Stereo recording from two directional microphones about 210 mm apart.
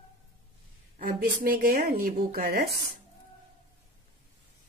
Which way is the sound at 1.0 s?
45° right (ahead or behind).